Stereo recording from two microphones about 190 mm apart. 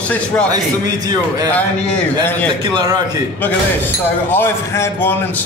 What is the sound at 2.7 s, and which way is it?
Speech, 20° right (ahead or behind).